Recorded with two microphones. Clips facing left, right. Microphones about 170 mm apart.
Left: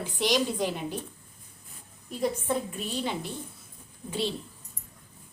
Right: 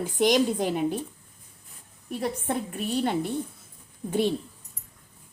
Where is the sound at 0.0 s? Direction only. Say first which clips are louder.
Right 5 dB; 50° right (ahead or behind).